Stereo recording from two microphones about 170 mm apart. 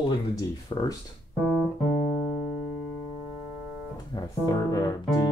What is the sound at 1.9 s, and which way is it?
Music, 35° left (ahead or behind).